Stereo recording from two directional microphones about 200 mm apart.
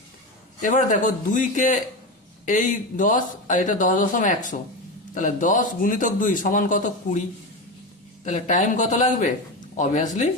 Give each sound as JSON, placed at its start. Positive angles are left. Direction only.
{"t": 0.6, "sound": "a man's voice", "side_deg": 40}
{"t": 8.2, "sound": "a man's voice", "side_deg": 40}